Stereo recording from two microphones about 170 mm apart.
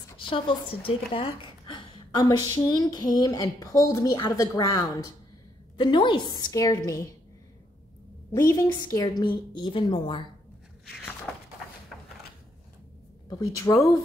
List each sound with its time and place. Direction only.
0.2 s a woman's voice: 30° left (ahead or behind)
8.3 s a woman's voice: 20° left (ahead or behind)
11.3 s a sound: centre (ahead or behind)
13.3 s a woman's voice: 20° left (ahead or behind)